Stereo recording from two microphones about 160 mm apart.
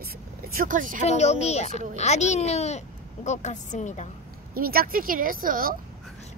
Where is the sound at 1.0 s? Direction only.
45° left (ahead or behind).